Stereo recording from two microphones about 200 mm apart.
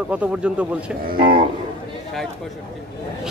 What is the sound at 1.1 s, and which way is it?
Speech, 45° right (ahead or behind).